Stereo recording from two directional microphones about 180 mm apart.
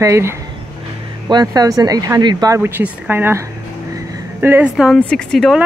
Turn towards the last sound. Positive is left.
turn(degrees=0)  # may be behind; listen again after turning